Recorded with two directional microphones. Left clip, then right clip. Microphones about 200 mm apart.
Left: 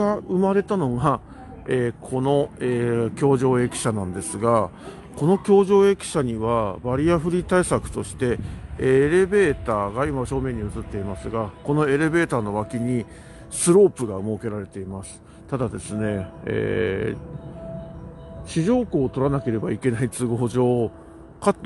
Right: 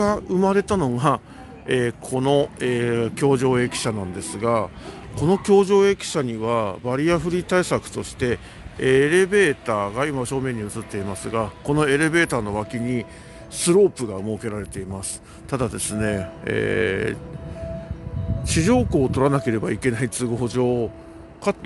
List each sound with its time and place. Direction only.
0.0 s speech: 5° right (ahead or behind)
18.4 s a woman's voice: 10° right (ahead or behind); by 21.6 s 20° left (ahead or behind)